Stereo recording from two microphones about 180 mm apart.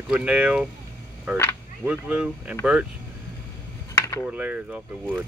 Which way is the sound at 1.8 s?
5° right (ahead or behind).